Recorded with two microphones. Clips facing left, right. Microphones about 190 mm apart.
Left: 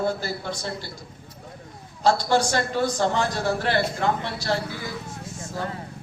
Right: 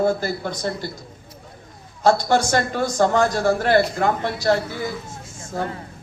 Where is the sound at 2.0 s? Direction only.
50° right (ahead or behind).